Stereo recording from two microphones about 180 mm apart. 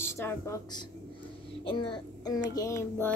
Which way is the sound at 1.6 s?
30° left (ahead or behind).